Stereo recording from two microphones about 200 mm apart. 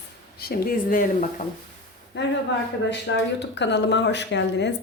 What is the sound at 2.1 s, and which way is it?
Speech, 60° left (ahead or behind).